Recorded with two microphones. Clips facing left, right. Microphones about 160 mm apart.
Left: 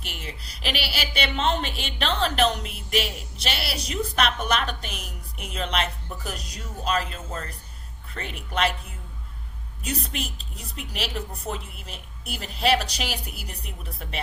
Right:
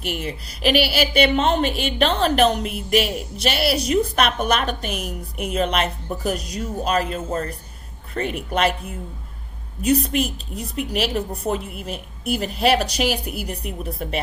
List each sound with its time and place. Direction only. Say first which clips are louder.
0.0 s a woman's voice: right 11 dB; 55° right (ahead or behind)
9.8 s a woman's voice: right 12 dB; 50° right (ahead or behind)